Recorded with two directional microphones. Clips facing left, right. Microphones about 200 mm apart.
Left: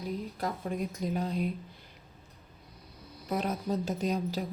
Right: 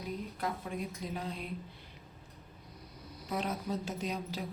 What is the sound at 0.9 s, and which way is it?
Speech, 40° left (ahead or behind).